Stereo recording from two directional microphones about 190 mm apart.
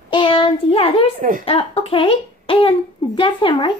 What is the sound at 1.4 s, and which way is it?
A child's voice, 30° left (ahead or behind).